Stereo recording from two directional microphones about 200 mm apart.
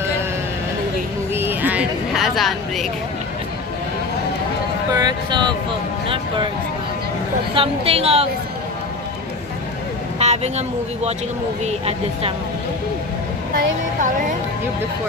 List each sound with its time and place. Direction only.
1.3 s a sound: 10° right (ahead or behind)
4.9 s a woman's voice: 20° right (ahead or behind)
7.5 s a woman's voice: 30° right (ahead or behind)
10.1 s speech: 35° right (ahead or behind)
11.6 s speech: 30° right (ahead or behind)